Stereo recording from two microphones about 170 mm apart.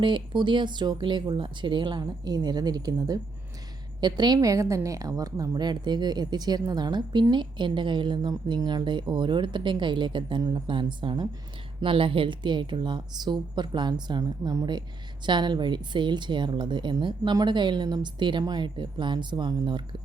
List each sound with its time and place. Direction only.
0.0 s a woman's voice: 30° right (ahead or behind)